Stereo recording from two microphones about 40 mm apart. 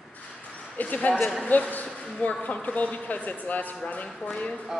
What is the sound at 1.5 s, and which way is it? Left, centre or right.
Speech, left.